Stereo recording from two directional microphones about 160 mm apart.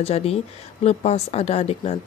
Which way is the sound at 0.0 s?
40° left (ahead or behind).